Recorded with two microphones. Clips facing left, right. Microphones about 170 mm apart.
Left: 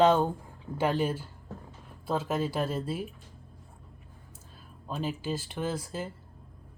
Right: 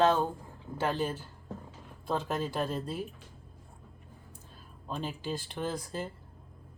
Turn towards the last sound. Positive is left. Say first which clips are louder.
# left 2 dB
turn(degrees=5)  # may be behind; listen again after turning